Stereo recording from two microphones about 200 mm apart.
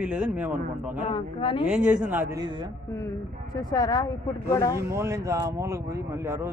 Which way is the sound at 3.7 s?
20° left (ahead or behind).